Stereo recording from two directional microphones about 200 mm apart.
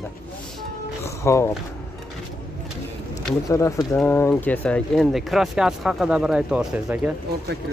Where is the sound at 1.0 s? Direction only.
15° left (ahead or behind).